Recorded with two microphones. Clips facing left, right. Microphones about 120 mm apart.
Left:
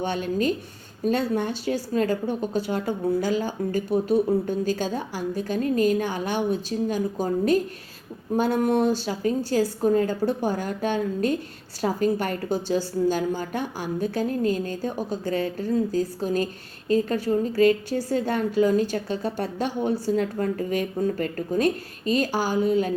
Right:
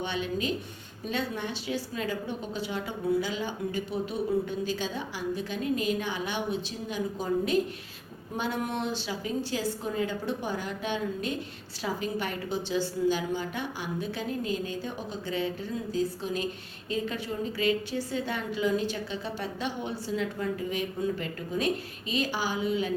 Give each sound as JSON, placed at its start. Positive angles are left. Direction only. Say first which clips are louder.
{"t": 0.0, "sound": "a woman's voice", "louder": "left 6 dB", "side_deg": 45}